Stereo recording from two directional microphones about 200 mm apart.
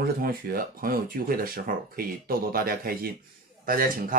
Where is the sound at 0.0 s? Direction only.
50° right (ahead or behind).